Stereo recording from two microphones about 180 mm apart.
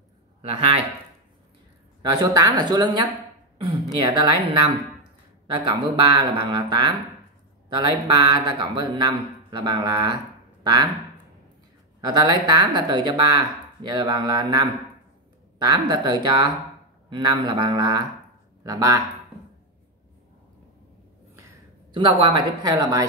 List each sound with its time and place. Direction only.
0.4 s speech: 30° right (ahead or behind)
2.0 s speech: 20° right (ahead or behind)
4.1 s speech: 25° right (ahead or behind)
12.0 s speech: 25° right (ahead or behind)
21.9 s speech: 25° right (ahead or behind)